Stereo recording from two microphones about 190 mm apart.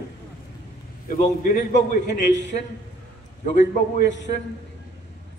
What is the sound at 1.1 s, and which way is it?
A man's voice, 45° left (ahead or behind).